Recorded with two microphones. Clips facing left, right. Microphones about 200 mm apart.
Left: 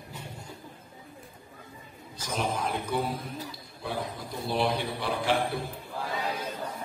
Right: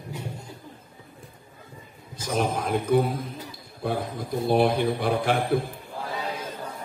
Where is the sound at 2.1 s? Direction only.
50° right (ahead or behind).